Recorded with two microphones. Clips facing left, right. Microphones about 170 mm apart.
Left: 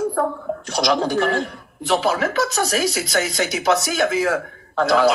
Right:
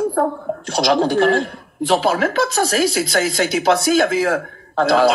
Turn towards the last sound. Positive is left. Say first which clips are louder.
# right 2 dB
turn(degrees=-30)  # may be behind; listen again after turning